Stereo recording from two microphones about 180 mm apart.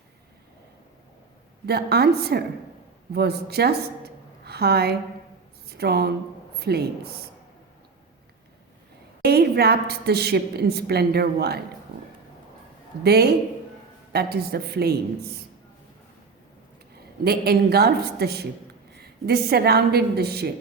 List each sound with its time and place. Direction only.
1.6 s a woman's voice: 60° right (ahead or behind)
9.2 s a woman's voice: 60° right (ahead or behind)
13.0 s a woman's voice: 60° right (ahead or behind)
17.2 s a woman's voice: 60° right (ahead or behind)